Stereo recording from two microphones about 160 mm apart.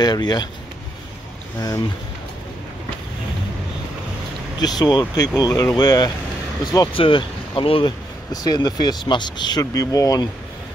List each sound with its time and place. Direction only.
0.0 s speech: 25° left (ahead or behind)
4.6 s speech: 25° left (ahead or behind)